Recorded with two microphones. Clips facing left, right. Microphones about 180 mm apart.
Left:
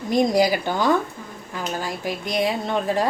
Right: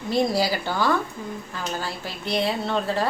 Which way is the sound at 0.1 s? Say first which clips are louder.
Left 4 dB; 15° left (ahead or behind).